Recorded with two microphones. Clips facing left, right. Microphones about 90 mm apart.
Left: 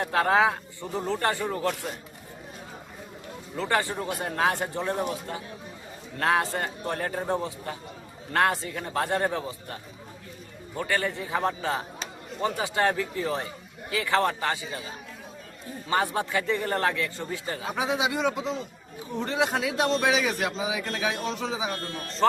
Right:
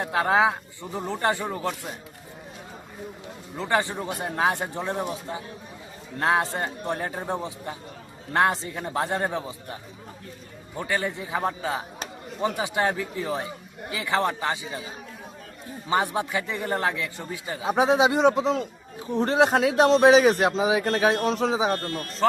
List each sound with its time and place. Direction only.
0.0 s a man's voice: 15° right (ahead or behind)
3.6 s a man's voice: 20° right (ahead or behind)
10.8 s a man's voice: 15° right (ahead or behind)
15.9 s a man's voice: 15° right (ahead or behind)
17.7 s speech: 40° right (ahead or behind)
22.2 s speech: centre (ahead or behind)